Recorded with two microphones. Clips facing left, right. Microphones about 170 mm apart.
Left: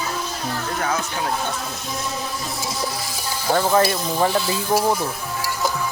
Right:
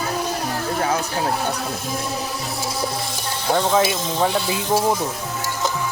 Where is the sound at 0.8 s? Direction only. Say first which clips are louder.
Right 3 dB; 30° right (ahead or behind).